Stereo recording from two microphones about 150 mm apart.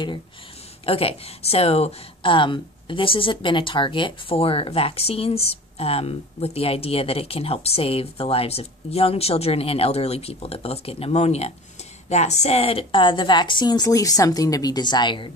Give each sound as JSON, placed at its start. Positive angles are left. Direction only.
{"t": 0.8, "sound": "speech", "side_deg": 40}